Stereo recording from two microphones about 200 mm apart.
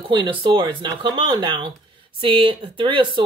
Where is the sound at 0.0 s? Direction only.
25° right (ahead or behind).